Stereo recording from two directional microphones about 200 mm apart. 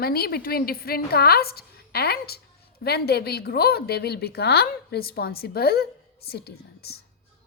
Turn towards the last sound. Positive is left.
turn(degrees=50)  # may be behind; listen again after turning